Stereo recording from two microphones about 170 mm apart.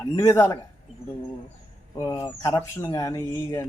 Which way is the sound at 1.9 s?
15° left (ahead or behind).